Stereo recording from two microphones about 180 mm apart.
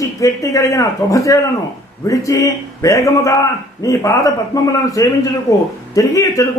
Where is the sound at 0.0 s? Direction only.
15° left (ahead or behind).